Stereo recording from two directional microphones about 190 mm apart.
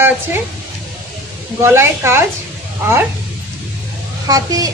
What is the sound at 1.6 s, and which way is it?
Speech, 15° right (ahead or behind).